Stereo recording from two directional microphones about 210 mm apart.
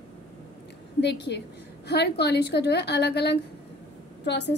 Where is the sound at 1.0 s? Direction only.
55° left (ahead or behind).